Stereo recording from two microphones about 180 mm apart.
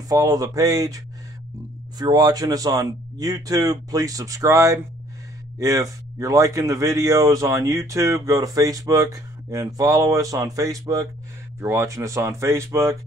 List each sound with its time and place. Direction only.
0.1 s speech: 20° right (ahead or behind)